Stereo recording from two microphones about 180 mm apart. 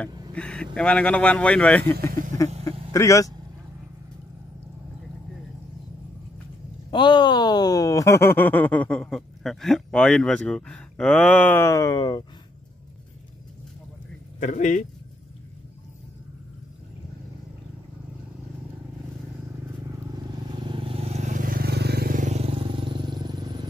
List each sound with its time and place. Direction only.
0.3 s vehicle: 5° left (ahead or behind)
0.7 s speech: 5° left (ahead or behind)
2.0 s a sound: 50° right (ahead or behind)
2.9 s speech: 15° left (ahead or behind)
6.9 s speech: 25° left (ahead or behind)
14.4 s speech: 45° left (ahead or behind)
20.5 s vehicle: 25° right (ahead or behind)